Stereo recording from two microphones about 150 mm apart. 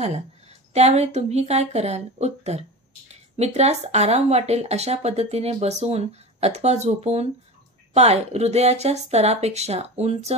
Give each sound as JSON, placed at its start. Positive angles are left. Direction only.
{"t": 0.0, "sound": "speech", "side_deg": -45}